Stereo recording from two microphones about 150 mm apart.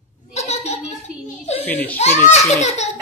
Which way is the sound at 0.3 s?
45° left (ahead or behind).